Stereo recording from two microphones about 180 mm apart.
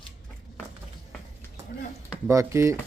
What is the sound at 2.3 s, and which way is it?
Speech, 15° right (ahead or behind).